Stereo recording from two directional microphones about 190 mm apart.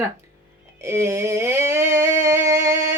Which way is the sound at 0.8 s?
15° right (ahead or behind).